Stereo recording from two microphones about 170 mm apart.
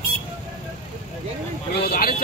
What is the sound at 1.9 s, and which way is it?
Speech, 60° left (ahead or behind).